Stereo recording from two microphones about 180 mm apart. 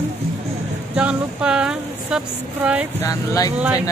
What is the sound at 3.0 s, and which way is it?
Speech, 20° left (ahead or behind).